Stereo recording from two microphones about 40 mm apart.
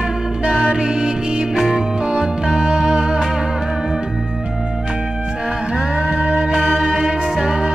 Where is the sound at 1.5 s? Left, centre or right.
Centre.